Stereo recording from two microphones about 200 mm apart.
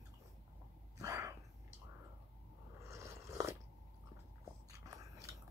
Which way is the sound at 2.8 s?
15° right (ahead or behind).